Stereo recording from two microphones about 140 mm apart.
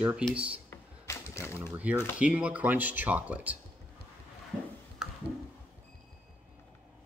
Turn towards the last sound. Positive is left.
turn(degrees=-5)  # may be behind; listen again after turning